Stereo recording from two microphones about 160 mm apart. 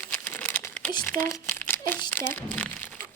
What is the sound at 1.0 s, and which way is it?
Speech, 15° left (ahead or behind).